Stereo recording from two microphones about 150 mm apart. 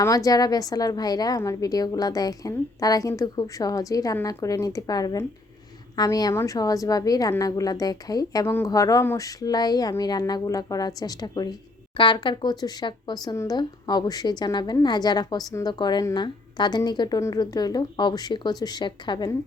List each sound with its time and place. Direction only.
0.3 s a woman's voice: 25° left (ahead or behind)